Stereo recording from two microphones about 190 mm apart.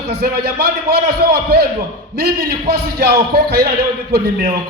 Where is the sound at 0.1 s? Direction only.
55° right (ahead or behind).